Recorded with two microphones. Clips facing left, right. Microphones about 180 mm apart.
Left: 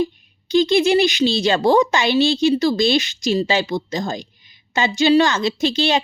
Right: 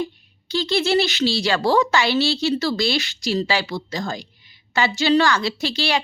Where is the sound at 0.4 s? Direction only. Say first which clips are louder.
Left 6 dB; 15° left (ahead or behind).